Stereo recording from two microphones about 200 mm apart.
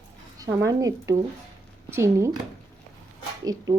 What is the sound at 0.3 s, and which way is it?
Speech, 20° right (ahead or behind).